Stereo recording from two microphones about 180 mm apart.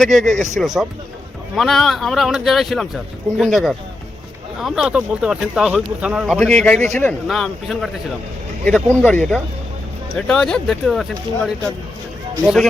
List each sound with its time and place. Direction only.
0.0 s a man's voice: centre (ahead or behind)
6.7 s a man's voice: 40° right (ahead or behind)
7.0 s a man's voice: 5° left (ahead or behind)